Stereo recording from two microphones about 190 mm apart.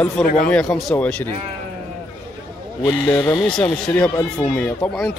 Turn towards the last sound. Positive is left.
turn(degrees=5)  # may be behind; listen again after turning